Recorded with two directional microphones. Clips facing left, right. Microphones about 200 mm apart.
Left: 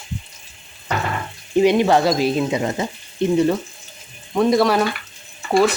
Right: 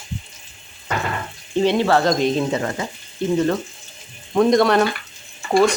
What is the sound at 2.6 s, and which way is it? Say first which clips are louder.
Speech: left 3 dB; 20° left (ahead or behind).